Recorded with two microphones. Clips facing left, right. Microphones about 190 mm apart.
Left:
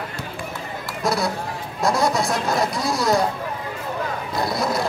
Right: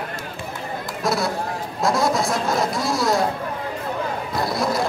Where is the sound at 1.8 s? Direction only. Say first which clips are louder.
Even; centre (ahead or behind).